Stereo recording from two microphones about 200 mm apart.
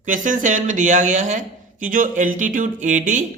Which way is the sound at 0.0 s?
40° right (ahead or behind).